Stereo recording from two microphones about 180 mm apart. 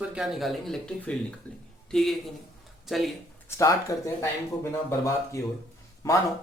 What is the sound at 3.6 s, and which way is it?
Speech, 15° left (ahead or behind).